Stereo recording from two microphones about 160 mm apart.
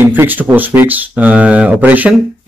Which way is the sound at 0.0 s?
15° right (ahead or behind).